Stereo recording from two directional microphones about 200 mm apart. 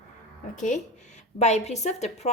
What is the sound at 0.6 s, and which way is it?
A woman's voice, 40° left (ahead or behind).